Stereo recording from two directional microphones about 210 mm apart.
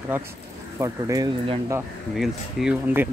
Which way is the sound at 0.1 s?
10° right (ahead or behind).